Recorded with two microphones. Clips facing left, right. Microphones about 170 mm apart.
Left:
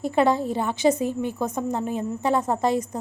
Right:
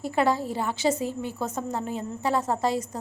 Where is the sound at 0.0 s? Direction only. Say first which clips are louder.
Left 4 dB; 20° left (ahead or behind).